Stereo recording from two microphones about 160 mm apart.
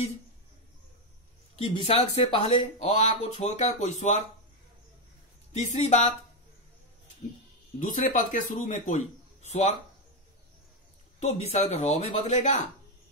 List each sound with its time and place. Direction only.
1.6 s speech: 40° left (ahead or behind)
5.5 s speech: 45° left (ahead or behind)
7.8 s speech: 55° left (ahead or behind)
11.1 s speech: 45° left (ahead or behind)